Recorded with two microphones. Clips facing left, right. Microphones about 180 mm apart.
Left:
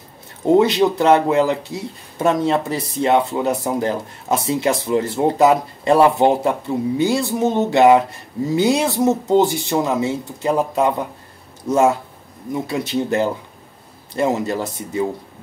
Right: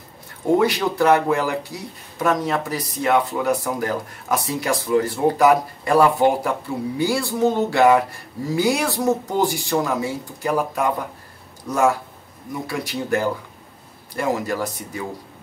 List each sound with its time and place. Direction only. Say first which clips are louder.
0.6 s speech: left 5 dB; 25° left (ahead or behind)